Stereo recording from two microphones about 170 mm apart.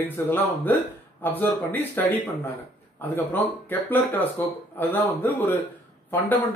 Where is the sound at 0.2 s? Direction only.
15° left (ahead or behind).